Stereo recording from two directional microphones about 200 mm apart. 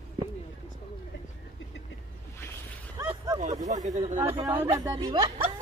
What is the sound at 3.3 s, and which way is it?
Speech, 35° right (ahead or behind).